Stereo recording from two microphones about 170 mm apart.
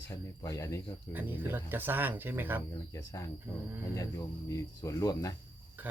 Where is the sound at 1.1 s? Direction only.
10° right (ahead or behind).